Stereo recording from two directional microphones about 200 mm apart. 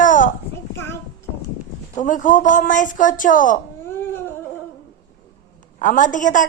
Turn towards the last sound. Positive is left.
turn(degrees=40)  # may be behind; listen again after turning